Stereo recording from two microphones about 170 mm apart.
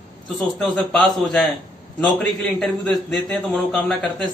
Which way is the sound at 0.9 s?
Centre (ahead or behind).